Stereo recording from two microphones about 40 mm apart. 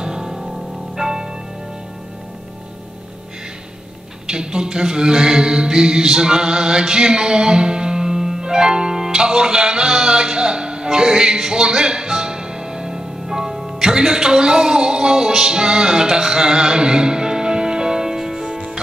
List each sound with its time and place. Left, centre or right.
0.0 s music: centre
4.3 s mantra: centre